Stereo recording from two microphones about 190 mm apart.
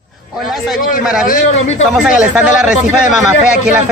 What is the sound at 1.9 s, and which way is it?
Speech, 5° right (ahead or behind).